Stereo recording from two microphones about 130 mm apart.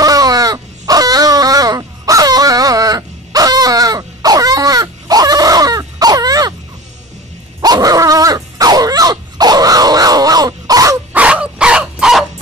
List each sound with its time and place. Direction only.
0.0 s a sound: 30° right (ahead or behind)
7.6 s dog: 30° right (ahead or behind)
11.1 s dog: 10° right (ahead or behind)